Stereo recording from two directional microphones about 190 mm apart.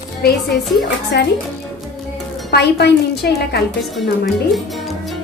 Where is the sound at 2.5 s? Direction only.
60° left (ahead or behind).